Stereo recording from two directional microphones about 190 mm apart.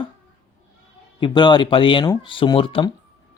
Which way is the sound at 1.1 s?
25° left (ahead or behind).